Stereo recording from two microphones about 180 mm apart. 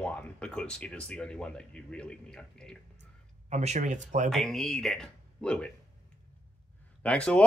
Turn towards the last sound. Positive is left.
turn(degrees=5)  # may be behind; listen again after turning